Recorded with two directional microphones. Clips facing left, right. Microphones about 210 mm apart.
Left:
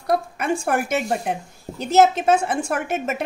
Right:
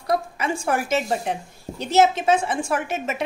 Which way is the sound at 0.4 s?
55° left (ahead or behind).